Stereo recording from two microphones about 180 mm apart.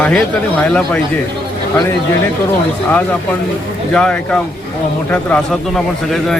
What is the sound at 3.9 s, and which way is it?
A man's voice, 5° left (ahead or behind).